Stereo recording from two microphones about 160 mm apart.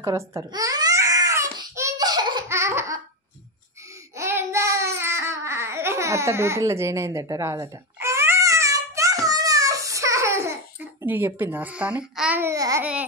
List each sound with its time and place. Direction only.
0.0 s babbling: 20° right (ahead or behind)
2.5 s laughter: 15° right (ahead or behind)
4.2 s a sound: 15° right (ahead or behind)